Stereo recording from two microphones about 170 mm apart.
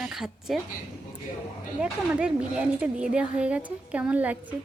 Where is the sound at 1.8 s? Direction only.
5° right (ahead or behind).